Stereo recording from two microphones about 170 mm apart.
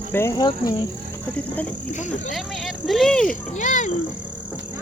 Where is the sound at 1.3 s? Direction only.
10° left (ahead or behind).